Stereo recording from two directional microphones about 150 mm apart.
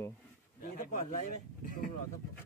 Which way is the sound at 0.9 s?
55° left (ahead or behind).